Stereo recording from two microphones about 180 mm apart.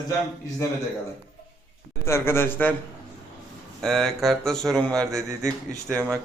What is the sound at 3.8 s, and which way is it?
Speech, centre (ahead or behind).